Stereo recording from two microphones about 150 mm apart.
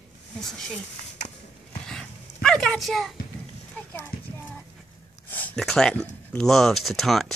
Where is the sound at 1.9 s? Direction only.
5° left (ahead or behind).